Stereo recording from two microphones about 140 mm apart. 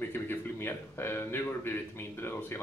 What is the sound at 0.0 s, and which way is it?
A man's voice, 15° left (ahead or behind).